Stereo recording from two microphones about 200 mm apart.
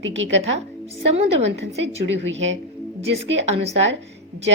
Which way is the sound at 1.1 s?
30° right (ahead or behind).